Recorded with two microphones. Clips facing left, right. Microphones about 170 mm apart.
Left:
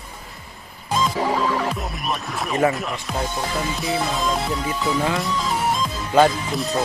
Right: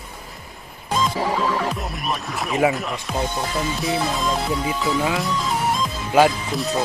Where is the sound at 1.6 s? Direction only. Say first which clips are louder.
Even; centre (ahead or behind).